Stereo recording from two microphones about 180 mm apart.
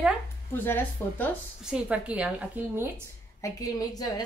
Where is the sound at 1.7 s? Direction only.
5° right (ahead or behind).